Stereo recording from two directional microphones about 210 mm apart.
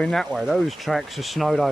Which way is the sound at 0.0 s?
Centre (ahead or behind).